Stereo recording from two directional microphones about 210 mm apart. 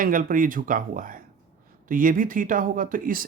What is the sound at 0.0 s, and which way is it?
Speech, 40° right (ahead or behind).